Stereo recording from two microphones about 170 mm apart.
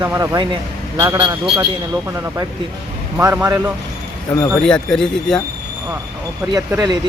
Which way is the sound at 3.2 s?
15° right (ahead or behind).